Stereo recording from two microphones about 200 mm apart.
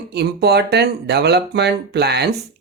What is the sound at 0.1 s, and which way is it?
Speech, 55° right (ahead or behind).